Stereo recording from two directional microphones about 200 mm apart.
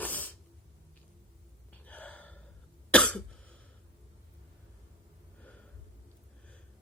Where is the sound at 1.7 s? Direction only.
5° left (ahead or behind).